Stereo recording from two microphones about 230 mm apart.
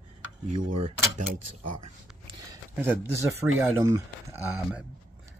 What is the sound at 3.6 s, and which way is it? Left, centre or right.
Speech, centre.